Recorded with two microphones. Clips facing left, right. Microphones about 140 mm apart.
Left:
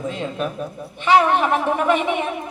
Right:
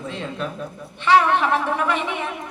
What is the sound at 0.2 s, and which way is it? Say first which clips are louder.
A woman's voice: left 3 dB; 15° left (ahead or behind).